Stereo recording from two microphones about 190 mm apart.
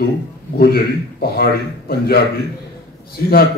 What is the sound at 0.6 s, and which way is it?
A man's voice, 55° left (ahead or behind).